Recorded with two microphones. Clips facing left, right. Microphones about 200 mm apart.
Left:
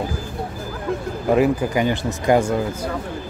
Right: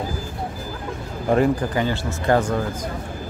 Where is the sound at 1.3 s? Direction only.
5° left (ahead or behind).